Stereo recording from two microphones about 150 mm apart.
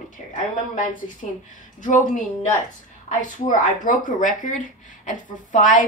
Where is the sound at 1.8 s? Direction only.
55° left (ahead or behind).